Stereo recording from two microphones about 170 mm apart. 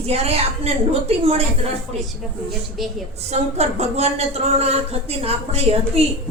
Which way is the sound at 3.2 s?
40° right (ahead or behind).